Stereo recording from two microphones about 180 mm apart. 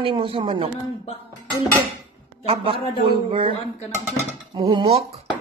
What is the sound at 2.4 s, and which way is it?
A man's voice, 30° right (ahead or behind).